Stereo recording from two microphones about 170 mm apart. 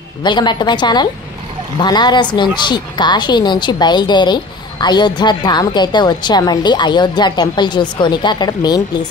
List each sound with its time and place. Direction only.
0.2 s a woman's voice: 25° left (ahead or behind)